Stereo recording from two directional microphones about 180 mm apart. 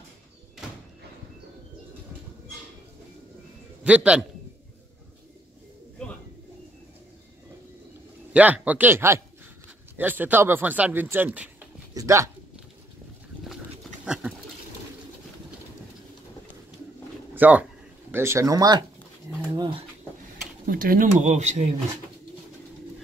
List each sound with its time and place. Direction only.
3.8 s speech: 5° right (ahead or behind)
8.3 s speech: 5° right (ahead or behind)
14.0 s dog: 5° right (ahead or behind)
17.4 s speech: 10° right (ahead or behind); by 19.8 s 25° right (ahead or behind)
20.6 s speech: 55° right (ahead or behind)